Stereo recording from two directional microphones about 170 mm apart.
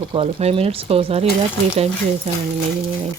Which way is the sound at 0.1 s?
35° right (ahead or behind).